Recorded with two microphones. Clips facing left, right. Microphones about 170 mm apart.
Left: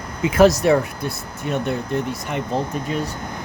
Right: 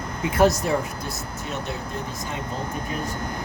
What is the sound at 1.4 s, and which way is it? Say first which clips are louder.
Speech: left 9 dB; 55° left (ahead or behind).